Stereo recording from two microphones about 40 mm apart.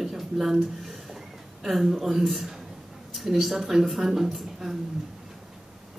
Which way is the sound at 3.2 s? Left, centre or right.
Centre.